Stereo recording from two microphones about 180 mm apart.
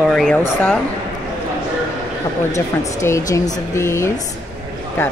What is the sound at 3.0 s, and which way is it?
Speech, 15° left (ahead or behind).